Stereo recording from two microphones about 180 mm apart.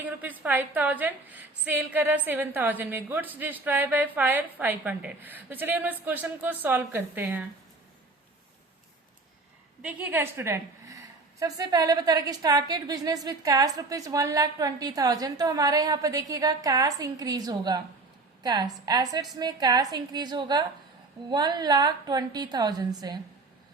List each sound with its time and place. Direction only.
0.0 s a woman's voice: 10° right (ahead or behind)
9.8 s a woman's voice: 10° right (ahead or behind)